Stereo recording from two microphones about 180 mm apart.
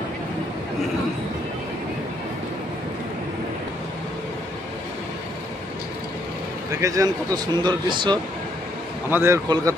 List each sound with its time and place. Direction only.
6.8 s speech: 20° right (ahead or behind)
9.1 s a man's voice: 15° right (ahead or behind)